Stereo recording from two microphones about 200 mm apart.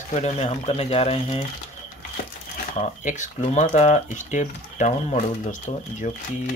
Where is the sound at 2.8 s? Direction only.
35° left (ahead or behind).